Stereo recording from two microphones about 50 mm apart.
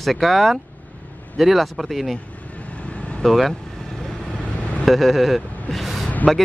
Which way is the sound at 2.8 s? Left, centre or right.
Left.